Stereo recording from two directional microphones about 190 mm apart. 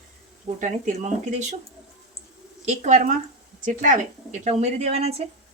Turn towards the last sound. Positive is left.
turn(degrees=-35)  # may be behind; listen again after turning